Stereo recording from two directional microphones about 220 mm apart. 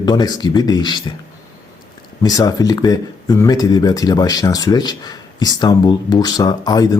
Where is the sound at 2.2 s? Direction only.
15° left (ahead or behind).